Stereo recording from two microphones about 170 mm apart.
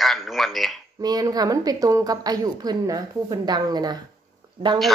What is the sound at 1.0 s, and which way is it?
A woman's voice, 20° right (ahead or behind).